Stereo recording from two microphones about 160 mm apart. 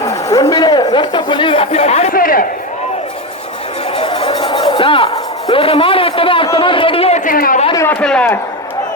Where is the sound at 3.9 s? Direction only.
35° left (ahead or behind).